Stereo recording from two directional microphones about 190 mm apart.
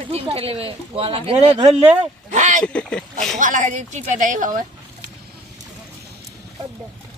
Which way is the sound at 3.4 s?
40° right (ahead or behind).